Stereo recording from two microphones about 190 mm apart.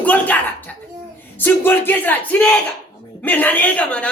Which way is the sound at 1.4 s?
10° left (ahead or behind).